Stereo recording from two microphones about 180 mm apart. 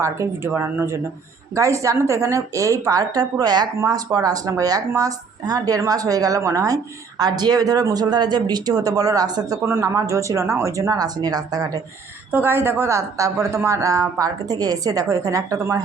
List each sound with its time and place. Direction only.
0.0 s a woman's voice: 15° right (ahead or behind)